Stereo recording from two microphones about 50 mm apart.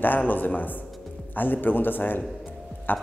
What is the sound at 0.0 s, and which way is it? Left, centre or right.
A man's voice, left.